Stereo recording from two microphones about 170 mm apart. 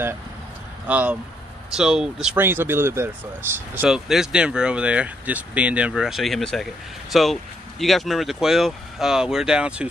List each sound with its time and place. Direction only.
0.8 s speech: 10° right (ahead or behind)